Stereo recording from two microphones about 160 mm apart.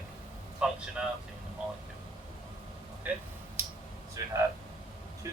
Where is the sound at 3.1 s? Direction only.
10° right (ahead or behind).